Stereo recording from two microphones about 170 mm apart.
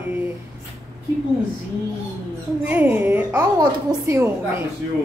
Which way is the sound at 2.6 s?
10° right (ahead or behind).